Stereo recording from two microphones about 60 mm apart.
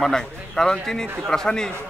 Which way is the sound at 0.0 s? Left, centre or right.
Centre.